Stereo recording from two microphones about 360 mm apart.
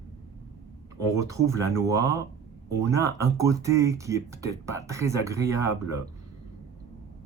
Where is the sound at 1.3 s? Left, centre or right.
Centre.